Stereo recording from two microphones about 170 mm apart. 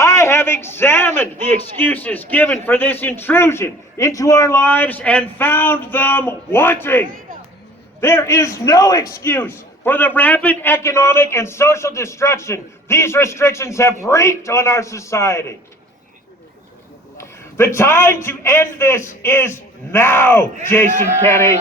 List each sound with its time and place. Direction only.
0.0 s a man's voice: 15° left (ahead or behind)
17.7 s a man's voice: 15° left (ahead or behind)